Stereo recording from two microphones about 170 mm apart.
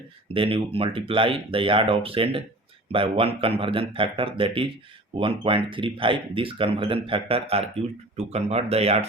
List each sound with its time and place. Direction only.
0.3 s speech: 35° right (ahead or behind)